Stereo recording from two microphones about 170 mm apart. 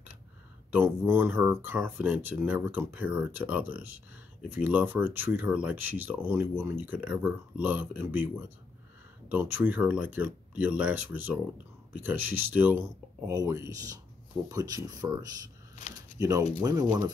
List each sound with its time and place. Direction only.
0.7 s speech: 15° right (ahead or behind)
9.3 s speech: 10° right (ahead or behind)
16.2 s speech: 20° right (ahead or behind)